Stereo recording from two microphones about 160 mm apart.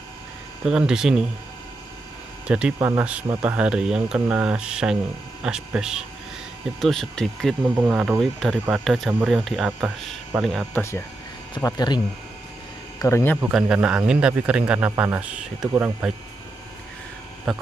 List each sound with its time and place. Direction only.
0.7 s speech: 5° right (ahead or behind)
2.4 s speech: 5° right (ahead or behind)
7.6 s speech: 10° right (ahead or behind)
10.7 s speech: 15° left (ahead or behind)
11.5 s speech: 25° left (ahead or behind)
13.0 s speech: 15° left (ahead or behind)
13.5 s speech: 5° right (ahead or behind)
17.5 s speech: centre (ahead or behind)